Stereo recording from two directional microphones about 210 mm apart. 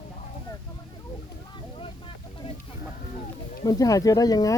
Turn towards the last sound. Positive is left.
turn(degrees=15)  # may be behind; listen again after turning